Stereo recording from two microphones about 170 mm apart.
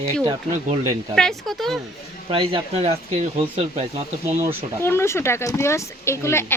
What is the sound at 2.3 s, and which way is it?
Speech, 35° right (ahead or behind).